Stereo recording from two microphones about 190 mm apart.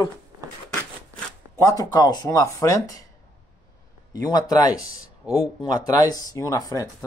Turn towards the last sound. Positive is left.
turn(degrees=15)  # may be behind; listen again after turning